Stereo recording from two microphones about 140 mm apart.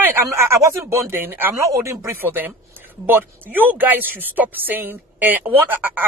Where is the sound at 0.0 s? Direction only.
20° right (ahead or behind).